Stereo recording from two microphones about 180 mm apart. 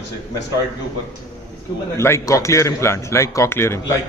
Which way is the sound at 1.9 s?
15° left (ahead or behind).